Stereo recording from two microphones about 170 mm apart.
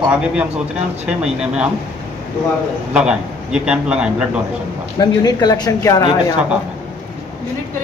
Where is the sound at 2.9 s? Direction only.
5° right (ahead or behind).